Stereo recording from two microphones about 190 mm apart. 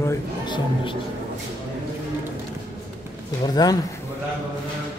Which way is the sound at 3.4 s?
20° left (ahead or behind).